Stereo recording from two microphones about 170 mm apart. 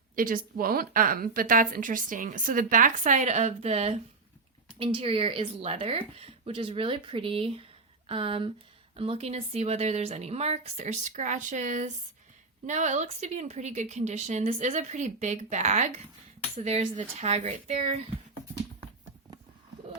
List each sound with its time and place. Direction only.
0.2 s a woman's voice: 55° right (ahead or behind); by 3.9 s 40° right (ahead or behind)
4.9 s a woman's voice: 35° right (ahead or behind)